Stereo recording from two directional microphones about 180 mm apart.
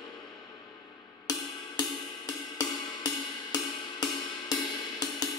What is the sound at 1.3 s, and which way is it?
Music, 20° left (ahead or behind).